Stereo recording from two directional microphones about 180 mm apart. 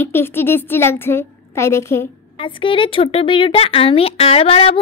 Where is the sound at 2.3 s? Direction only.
30° left (ahead or behind).